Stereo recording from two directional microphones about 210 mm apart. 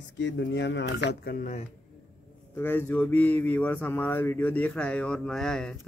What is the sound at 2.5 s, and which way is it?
Speech, 10° left (ahead or behind).